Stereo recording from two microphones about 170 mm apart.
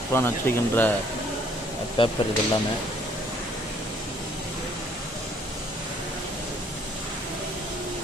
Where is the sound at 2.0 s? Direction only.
30° left (ahead or behind).